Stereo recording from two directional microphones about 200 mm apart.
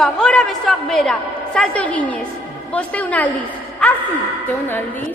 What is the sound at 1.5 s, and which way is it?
A woman's voice, 5° left (ahead or behind).